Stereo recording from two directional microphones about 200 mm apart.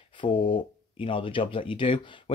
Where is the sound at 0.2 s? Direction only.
25° left (ahead or behind).